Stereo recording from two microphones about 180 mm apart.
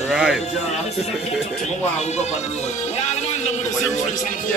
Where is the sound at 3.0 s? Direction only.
40° left (ahead or behind).